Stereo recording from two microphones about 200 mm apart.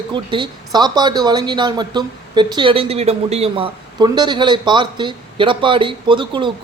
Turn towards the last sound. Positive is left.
turn(degrees=-25)  # may be behind; listen again after turning